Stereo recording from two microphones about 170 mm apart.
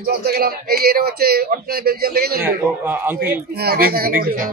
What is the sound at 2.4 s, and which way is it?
Speech, 10° right (ahead or behind).